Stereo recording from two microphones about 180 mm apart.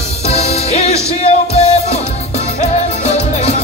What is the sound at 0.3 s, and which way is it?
Music, 35° left (ahead or behind).